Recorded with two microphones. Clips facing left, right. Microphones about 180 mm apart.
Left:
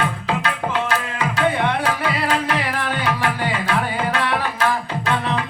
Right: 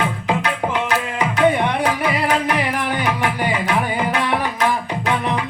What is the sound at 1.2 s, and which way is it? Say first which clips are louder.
Music: right 4 dB; 15° right (ahead or behind).